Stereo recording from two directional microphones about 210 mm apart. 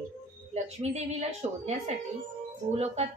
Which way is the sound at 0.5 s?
30° right (ahead or behind).